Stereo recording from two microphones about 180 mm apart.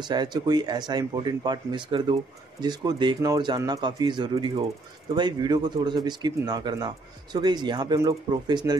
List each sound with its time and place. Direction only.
0.1 s speech: 25° right (ahead or behind)